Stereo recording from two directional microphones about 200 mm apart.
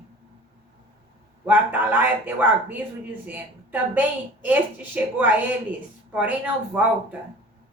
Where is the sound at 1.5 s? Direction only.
10° right (ahead or behind).